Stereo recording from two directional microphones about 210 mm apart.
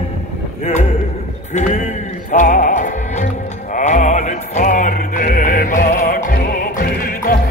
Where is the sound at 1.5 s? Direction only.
35° left (ahead or behind).